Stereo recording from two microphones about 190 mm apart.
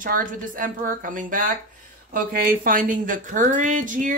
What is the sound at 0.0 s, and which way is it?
A woman's voice, 45° right (ahead or behind).